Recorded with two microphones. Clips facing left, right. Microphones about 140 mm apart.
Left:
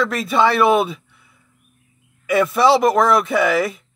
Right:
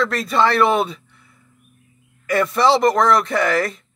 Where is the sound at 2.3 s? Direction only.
5° left (ahead or behind).